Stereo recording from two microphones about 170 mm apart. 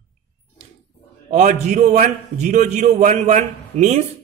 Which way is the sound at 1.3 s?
40° right (ahead or behind).